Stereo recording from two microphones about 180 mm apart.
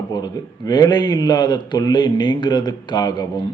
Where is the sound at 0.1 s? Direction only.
20° left (ahead or behind).